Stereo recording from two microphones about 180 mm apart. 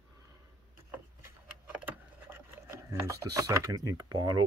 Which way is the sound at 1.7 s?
10° right (ahead or behind).